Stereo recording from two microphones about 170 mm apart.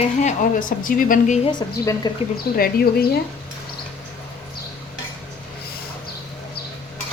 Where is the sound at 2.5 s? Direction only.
65° left (ahead or behind).